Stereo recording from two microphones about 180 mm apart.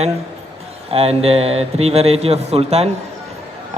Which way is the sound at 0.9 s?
35° right (ahead or behind).